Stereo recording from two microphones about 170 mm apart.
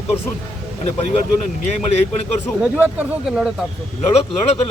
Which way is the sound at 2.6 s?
10° right (ahead or behind).